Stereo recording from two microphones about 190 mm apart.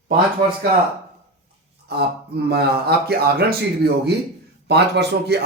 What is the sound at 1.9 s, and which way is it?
Speech, 60° right (ahead or behind).